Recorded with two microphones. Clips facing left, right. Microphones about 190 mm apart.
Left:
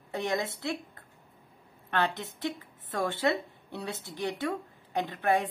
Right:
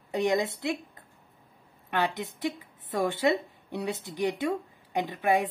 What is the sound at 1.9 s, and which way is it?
Speech, 15° right (ahead or behind).